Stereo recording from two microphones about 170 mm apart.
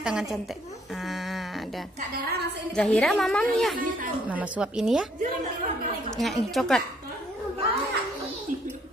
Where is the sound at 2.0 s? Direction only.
65° right (ahead or behind).